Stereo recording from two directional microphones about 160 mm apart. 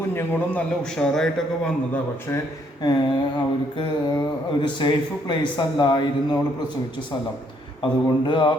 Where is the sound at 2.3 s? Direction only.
15° left (ahead or behind).